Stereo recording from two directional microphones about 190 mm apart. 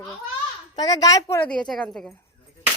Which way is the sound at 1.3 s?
5° left (ahead or behind).